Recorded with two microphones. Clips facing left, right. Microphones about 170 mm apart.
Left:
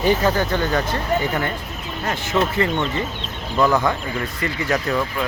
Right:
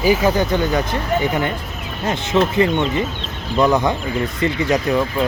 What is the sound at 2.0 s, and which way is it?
Speech, 20° right (ahead or behind).